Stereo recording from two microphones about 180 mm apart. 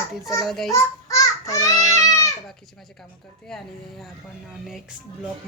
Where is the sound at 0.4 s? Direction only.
Centre (ahead or behind).